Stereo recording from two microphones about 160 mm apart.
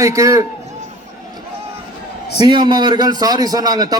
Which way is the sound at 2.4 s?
30° right (ahead or behind).